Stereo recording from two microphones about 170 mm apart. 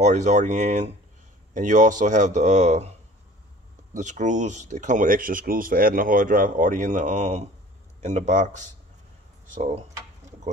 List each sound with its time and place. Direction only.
0.0 s speech: 45° right (ahead or behind)
3.9 s speech: 45° right (ahead or behind)